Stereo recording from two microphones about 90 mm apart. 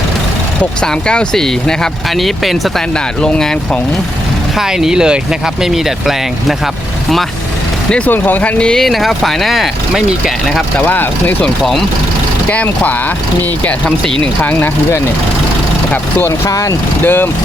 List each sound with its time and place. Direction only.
0.8 s speech: 10° left (ahead or behind)
4.5 s speech: 5° right (ahead or behind)
7.9 s speech: 10° left (ahead or behind)
10.8 s speech: 20° left (ahead or behind)
16.5 s speech: 40° left (ahead or behind)
17.0 s speech: 25° left (ahead or behind)